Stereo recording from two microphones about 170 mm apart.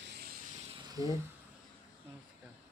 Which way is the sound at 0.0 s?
70° right (ahead or behind).